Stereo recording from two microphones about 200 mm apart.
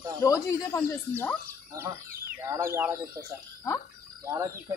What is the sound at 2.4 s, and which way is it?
Speech, 15° right (ahead or behind).